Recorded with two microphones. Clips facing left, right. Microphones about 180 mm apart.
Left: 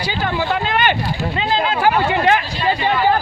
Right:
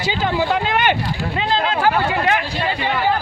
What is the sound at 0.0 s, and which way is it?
Speech, 20° right (ahead or behind).